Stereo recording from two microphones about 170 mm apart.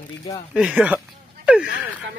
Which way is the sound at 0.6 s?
5° right (ahead or behind).